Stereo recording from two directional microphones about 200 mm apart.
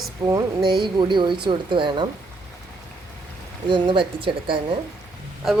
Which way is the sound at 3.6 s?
25° right (ahead or behind).